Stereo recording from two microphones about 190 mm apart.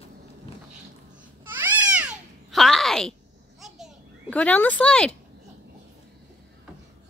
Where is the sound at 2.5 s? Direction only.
Centre (ahead or behind).